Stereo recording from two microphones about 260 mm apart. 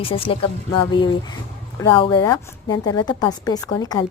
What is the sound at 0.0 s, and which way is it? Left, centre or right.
Speech, left.